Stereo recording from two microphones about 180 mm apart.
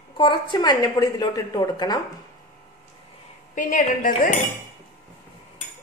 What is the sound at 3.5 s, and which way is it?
Speech, 45° left (ahead or behind).